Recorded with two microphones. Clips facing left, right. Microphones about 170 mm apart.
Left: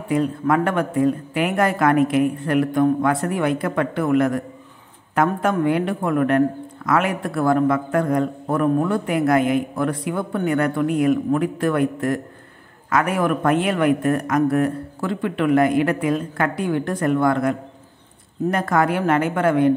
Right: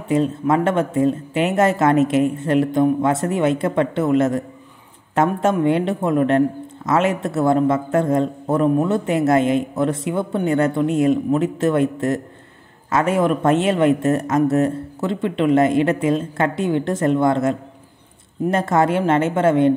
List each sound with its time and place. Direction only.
0.1 s a man's voice: 25° right (ahead or behind)